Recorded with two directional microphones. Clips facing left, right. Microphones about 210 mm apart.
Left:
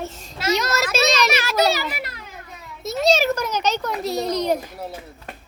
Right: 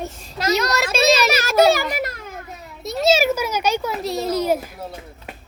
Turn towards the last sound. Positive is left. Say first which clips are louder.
# right 1 dB
turn(degrees=-5)  # may be behind; listen again after turning